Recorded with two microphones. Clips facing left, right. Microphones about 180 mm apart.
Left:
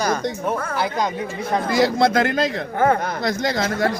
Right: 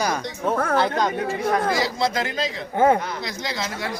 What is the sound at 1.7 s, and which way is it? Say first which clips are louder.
A man's voice: left 5 dB; 55° left (ahead or behind).